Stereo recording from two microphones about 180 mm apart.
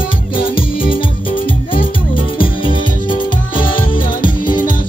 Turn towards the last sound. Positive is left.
turn(degrees=25)  # may be behind; listen again after turning